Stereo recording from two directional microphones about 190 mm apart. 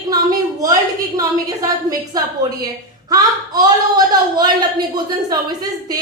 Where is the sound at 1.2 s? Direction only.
20° right (ahead or behind).